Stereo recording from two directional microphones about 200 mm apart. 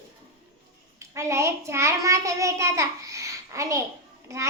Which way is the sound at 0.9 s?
15° right (ahead or behind).